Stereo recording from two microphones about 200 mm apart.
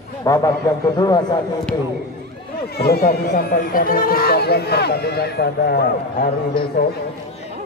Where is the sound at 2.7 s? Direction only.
50° left (ahead or behind).